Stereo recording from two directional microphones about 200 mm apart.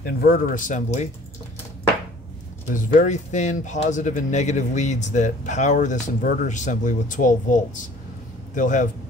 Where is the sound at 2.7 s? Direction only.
40° left (ahead or behind).